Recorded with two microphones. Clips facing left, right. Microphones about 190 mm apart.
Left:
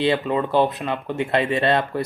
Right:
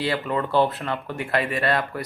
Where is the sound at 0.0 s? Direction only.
15° left (ahead or behind).